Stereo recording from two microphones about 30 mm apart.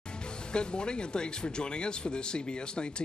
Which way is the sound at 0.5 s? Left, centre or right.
Left.